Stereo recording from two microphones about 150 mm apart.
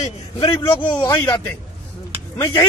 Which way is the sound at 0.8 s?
10° left (ahead or behind).